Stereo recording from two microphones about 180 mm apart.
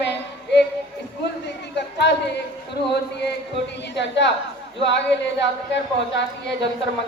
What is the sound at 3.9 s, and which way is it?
Speech, 80° left.